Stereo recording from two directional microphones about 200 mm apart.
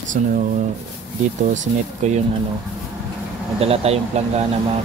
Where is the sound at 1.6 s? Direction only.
35° right (ahead or behind).